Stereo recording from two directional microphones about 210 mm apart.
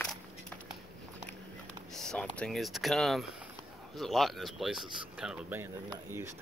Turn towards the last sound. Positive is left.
turn(degrees=-5)  # may be behind; listen again after turning